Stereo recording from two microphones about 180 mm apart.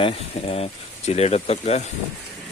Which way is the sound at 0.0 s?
35° left (ahead or behind).